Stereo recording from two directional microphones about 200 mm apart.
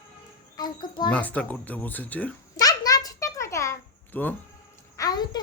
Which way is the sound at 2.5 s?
20° left (ahead or behind).